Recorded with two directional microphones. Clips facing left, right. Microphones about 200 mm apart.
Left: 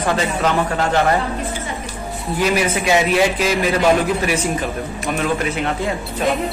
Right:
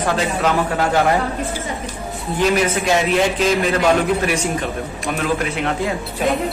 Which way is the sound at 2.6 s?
5° left (ahead or behind).